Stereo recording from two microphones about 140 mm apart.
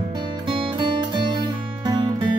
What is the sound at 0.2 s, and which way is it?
Music, 35° right (ahead or behind).